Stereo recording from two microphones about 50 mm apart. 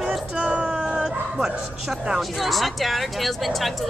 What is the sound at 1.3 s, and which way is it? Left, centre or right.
Speech, centre.